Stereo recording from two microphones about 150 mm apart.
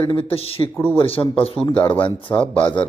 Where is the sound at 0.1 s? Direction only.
40° left (ahead or behind).